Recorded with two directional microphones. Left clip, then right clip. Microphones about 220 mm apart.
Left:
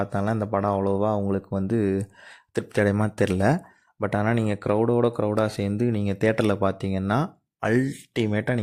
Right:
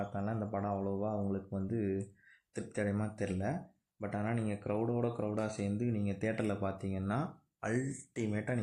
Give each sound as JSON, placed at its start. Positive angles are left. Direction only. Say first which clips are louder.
{"t": 0.0, "sound": "speech", "louder": "left 12 dB", "side_deg": 40}